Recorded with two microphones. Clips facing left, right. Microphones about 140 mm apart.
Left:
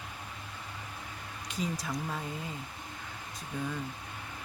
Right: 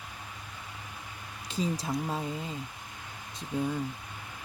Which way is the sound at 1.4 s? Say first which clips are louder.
Right 4 dB; 30° right (ahead or behind).